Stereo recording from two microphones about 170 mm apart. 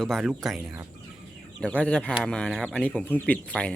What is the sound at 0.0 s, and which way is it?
Speech, centre (ahead or behind).